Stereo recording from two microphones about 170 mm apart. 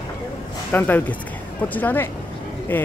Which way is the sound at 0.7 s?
10° left (ahead or behind).